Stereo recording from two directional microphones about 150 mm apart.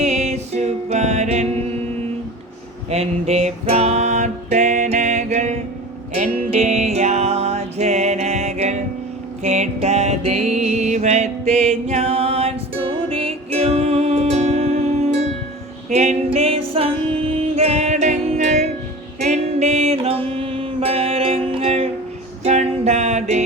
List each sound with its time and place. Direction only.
0.0 s music: 45° right (ahead or behind)
2.9 s music: 45° right (ahead or behind)
15.9 s female singing: 45° right (ahead or behind)
17.5 s music: 45° right (ahead or behind)
22.4 s a sound: 45° right (ahead or behind)